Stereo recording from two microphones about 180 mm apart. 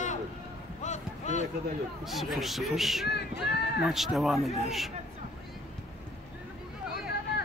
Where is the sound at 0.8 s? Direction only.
40° left (ahead or behind).